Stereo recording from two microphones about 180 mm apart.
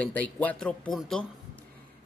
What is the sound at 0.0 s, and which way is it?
Speech, 10° left (ahead or behind).